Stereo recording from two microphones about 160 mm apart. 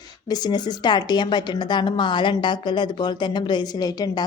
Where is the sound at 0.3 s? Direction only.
25° left (ahead or behind).